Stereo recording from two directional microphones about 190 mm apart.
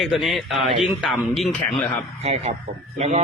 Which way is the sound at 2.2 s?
35° right (ahead or behind).